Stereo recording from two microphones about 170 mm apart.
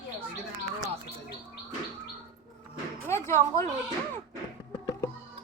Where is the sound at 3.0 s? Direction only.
15° left (ahead or behind).